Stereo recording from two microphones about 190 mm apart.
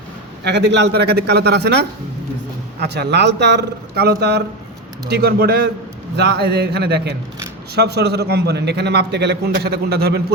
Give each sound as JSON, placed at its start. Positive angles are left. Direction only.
{"t": 0.4, "sound": "a man's voice", "side_deg": -65}